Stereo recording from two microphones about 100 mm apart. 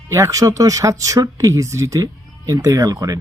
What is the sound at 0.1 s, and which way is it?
Speech, 35° right (ahead or behind).